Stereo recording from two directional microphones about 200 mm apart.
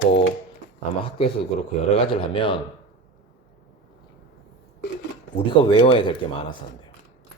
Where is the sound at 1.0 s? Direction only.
25° left (ahead or behind).